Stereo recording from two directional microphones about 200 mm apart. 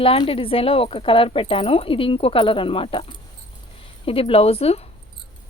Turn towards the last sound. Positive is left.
turn(degrees=30)  # may be behind; listen again after turning